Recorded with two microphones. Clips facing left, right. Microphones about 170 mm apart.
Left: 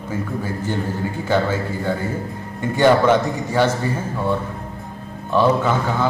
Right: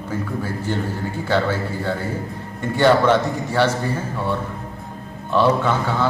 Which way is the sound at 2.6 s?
10° left (ahead or behind).